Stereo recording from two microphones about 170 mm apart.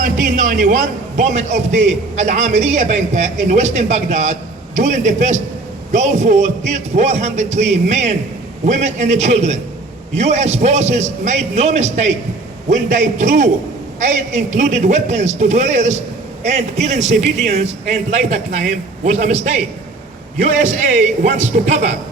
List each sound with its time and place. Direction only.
0.0 s a man's voice: 45° right (ahead or behind)
18.1 s a man's voice: 45° right (ahead or behind)
20.4 s a man's voice: 45° right (ahead or behind)